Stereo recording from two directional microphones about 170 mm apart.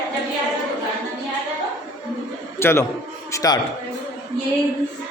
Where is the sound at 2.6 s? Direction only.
15° left (ahead or behind).